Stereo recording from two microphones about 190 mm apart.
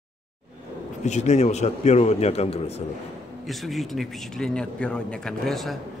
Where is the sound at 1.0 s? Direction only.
35° left (ahead or behind).